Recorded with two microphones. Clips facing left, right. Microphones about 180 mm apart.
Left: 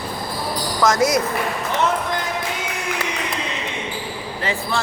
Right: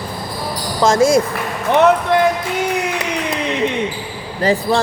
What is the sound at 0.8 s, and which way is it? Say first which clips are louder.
Speech: right 5 dB; 25° right (ahead or behind).